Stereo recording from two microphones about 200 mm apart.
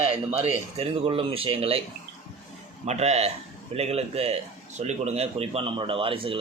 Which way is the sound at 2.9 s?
30° right (ahead or behind).